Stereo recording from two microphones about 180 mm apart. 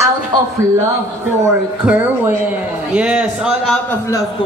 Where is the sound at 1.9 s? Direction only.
10° right (ahead or behind).